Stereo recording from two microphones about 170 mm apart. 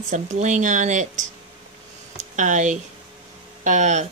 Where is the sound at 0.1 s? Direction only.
45° right (ahead or behind).